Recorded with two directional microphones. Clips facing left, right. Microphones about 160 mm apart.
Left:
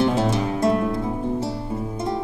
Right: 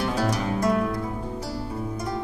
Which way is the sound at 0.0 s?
25° left (ahead or behind).